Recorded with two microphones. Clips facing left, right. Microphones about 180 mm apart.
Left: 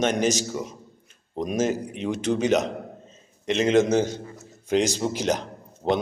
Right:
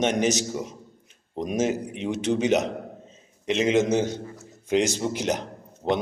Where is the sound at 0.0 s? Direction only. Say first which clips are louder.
Even; 20° right (ahead or behind).